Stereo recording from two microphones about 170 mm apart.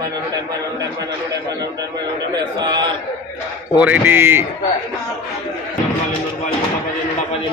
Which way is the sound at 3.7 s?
10° right (ahead or behind).